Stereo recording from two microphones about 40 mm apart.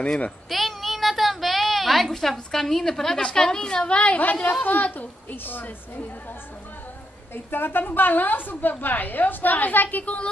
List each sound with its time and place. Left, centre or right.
0.5 s a sound: centre
3.2 s a woman's voice: centre
4.2 s a woman's voice: left
7.3 s a woman's voice: left